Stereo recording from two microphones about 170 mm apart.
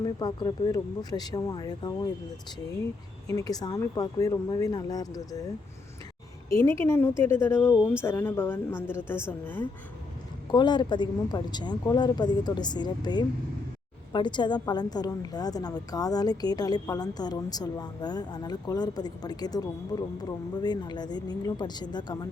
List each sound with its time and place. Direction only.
0.0 s a woman's voice: 25° left (ahead or behind)
3.2 s a woman's voice: 20° left (ahead or behind)
6.5 s a woman's voice: 15° left (ahead or behind)
10.5 s a woman's voice: 25° left (ahead or behind)